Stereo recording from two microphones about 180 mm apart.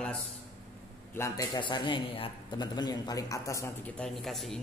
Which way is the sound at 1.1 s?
15° left (ahead or behind).